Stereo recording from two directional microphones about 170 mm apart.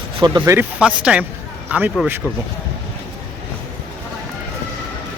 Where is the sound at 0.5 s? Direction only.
5° right (ahead or behind).